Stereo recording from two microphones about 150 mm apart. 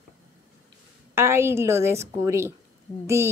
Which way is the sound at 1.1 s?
15° right (ahead or behind).